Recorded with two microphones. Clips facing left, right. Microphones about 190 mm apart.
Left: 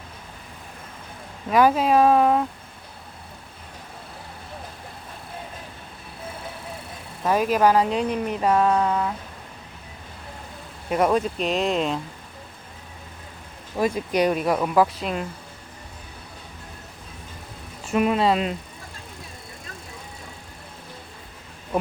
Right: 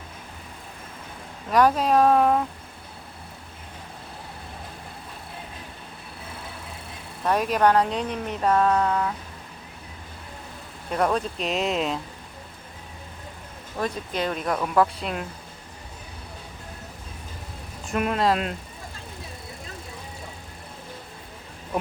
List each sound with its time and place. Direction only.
1.5 s speech: 5° left (ahead or behind)
7.3 s speech: centre (ahead or behind)
10.8 s speech: 5° left (ahead or behind)
13.7 s speech: 10° left (ahead or behind)
17.8 s speech: centre (ahead or behind)